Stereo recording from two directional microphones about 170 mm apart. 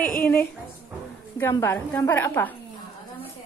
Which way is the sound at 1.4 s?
15° left (ahead or behind).